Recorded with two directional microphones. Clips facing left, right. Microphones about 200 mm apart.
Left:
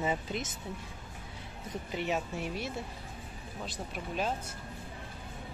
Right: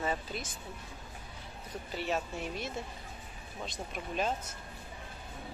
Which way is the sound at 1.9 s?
10° left (ahead or behind).